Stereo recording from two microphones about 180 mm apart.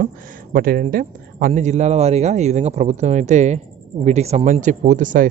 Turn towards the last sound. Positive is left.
turn(degrees=-45)  # may be behind; listen again after turning